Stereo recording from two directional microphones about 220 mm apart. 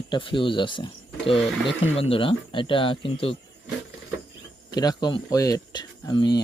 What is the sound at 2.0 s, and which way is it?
Speech, 25° left (ahead or behind).